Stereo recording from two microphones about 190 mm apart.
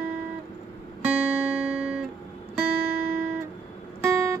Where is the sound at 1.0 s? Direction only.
5° right (ahead or behind).